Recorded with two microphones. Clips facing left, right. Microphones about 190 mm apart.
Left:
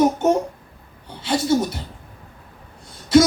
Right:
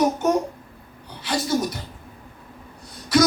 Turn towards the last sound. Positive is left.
turn(degrees=25)  # may be behind; listen again after turning